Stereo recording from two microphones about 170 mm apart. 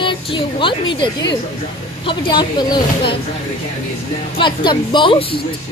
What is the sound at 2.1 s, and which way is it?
A woman's voice, 25° left (ahead or behind).